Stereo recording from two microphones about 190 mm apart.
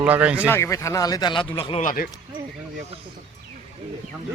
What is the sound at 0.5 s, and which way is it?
Speech, 15° left (ahead or behind).